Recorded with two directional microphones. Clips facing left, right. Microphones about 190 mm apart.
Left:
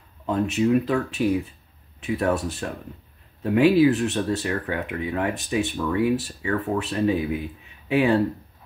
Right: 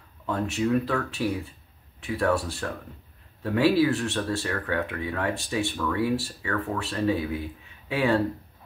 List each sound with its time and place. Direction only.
0.3 s speech: 20° left (ahead or behind)